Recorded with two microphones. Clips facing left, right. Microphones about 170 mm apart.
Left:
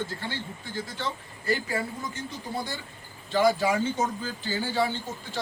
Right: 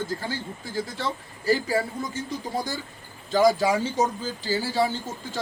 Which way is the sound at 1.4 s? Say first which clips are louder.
Right 5 dB; 35° right (ahead or behind).